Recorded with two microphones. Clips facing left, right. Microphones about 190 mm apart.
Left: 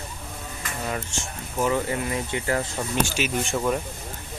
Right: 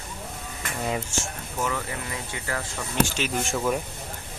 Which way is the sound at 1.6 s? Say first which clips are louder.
Left 6 dB; 25° left (ahead or behind).